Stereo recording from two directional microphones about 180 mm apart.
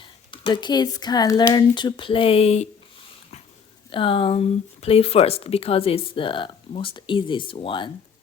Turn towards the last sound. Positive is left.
turn(degrees=30)  # may be behind; listen again after turning